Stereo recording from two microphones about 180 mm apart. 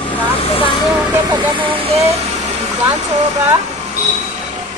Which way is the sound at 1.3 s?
25° right (ahead or behind).